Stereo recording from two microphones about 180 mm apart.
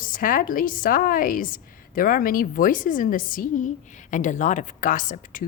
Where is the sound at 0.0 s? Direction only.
50° left (ahead or behind).